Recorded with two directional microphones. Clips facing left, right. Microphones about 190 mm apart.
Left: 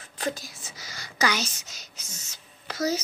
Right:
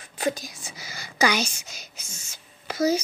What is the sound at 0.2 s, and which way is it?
Whispering, 15° right (ahead or behind).